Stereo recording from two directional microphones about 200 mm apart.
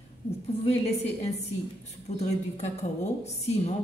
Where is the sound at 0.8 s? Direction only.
30° left (ahead or behind).